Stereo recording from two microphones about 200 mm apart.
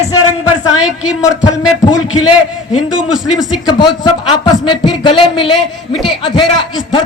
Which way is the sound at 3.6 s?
20° left (ahead or behind).